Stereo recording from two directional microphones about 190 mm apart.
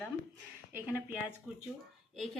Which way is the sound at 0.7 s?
10° right (ahead or behind).